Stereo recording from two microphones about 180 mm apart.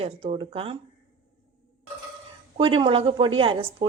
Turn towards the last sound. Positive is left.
turn(degrees=-30)  # may be behind; listen again after turning